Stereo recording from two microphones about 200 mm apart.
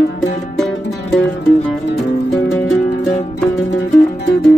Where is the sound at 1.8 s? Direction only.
60° left (ahead or behind).